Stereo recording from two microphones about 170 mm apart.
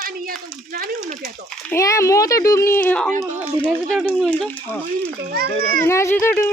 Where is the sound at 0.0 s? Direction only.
60° right (ahead or behind).